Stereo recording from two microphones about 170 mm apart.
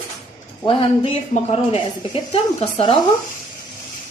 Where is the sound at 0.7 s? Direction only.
30° left (ahead or behind).